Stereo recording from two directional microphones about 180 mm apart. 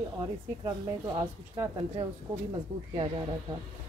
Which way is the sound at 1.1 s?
25° right (ahead or behind).